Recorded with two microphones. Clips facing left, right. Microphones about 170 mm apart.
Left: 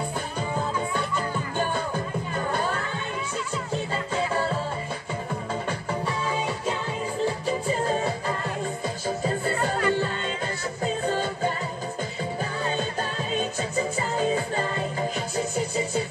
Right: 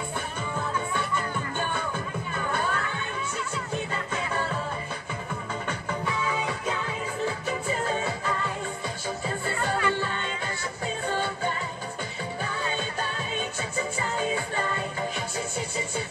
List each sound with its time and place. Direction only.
3.9 s music: 30° left (ahead or behind)
5.7 s music: 35° left (ahead or behind)
7.9 s music: 35° left (ahead or behind)